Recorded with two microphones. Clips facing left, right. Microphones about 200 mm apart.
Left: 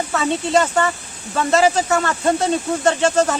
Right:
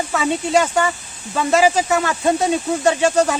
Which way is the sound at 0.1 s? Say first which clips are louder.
Even; 5° right (ahead or behind).